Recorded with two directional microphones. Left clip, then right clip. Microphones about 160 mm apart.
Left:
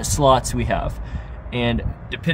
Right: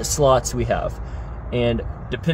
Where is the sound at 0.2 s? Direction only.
15° left (ahead or behind).